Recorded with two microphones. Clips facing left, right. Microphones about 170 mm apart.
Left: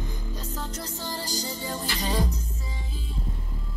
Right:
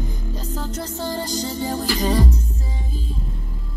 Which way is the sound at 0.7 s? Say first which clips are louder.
Right 8 dB; 50° right (ahead or behind).